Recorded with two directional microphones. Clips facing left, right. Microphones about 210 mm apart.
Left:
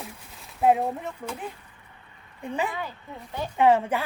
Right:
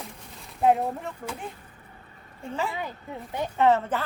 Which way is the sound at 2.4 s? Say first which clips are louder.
Left 1 dB; 15° left (ahead or behind).